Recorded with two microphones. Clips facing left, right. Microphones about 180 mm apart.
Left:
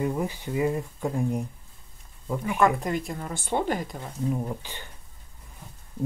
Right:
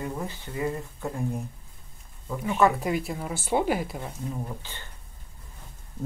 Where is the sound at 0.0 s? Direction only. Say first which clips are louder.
Left 6 dB; 15° left (ahead or behind).